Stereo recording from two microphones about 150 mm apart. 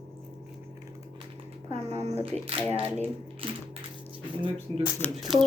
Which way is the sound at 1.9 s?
45° right (ahead or behind).